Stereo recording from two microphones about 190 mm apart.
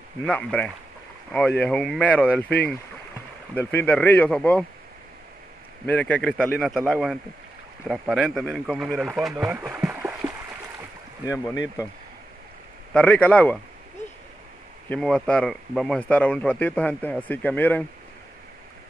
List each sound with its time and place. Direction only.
0.2 s speech: 5° left (ahead or behind)
3.5 s speech: 10° left (ahead or behind)
5.9 s speech: 10° left (ahead or behind); by 10.1 s 10° right (ahead or behind)
11.2 s speech: 15° left (ahead or behind)
12.9 s speech: 5° left (ahead or behind)
14.9 s speech: 5° left (ahead or behind)